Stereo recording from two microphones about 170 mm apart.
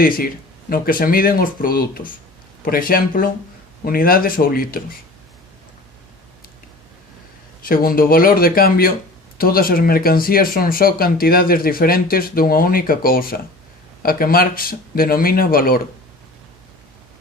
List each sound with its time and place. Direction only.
0.7 s speech: 55° left (ahead or behind)
7.6 s speech: 60° left (ahead or behind)